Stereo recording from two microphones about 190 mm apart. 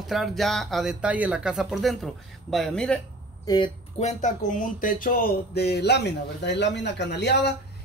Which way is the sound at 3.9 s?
40° left (ahead or behind).